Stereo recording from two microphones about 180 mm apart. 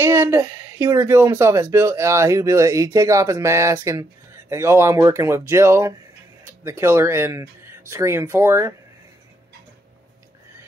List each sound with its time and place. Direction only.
0.0 s speech: 15° right (ahead or behind)